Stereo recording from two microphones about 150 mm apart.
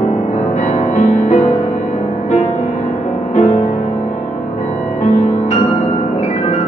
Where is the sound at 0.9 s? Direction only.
50° left (ahead or behind).